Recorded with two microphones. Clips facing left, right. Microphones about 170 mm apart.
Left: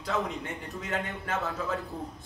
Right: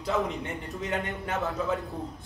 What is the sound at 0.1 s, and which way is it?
Speech, centre (ahead or behind).